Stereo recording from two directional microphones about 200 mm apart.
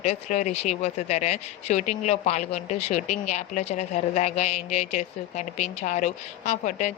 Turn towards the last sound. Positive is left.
turn(degrees=35)  # may be behind; listen again after turning